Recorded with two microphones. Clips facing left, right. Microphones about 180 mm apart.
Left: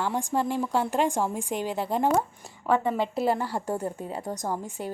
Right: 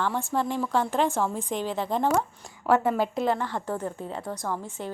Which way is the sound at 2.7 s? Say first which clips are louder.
Right 2 dB; 5° right (ahead or behind).